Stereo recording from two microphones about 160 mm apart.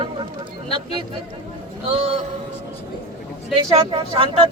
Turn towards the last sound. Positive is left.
turn(degrees=-35)  # may be behind; listen again after turning